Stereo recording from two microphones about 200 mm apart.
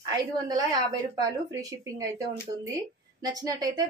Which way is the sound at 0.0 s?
20° right (ahead or behind).